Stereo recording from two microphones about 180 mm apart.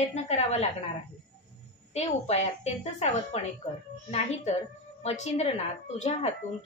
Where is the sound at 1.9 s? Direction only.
35° left (ahead or behind).